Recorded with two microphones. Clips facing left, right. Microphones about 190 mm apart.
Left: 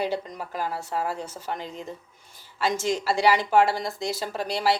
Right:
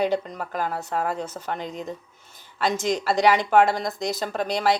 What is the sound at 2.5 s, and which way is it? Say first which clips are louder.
Speech: right 1 dB; 10° left (ahead or behind).